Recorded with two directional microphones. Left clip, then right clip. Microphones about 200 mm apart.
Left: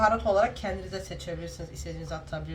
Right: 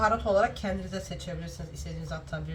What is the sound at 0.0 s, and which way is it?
Speech, 25° left (ahead or behind).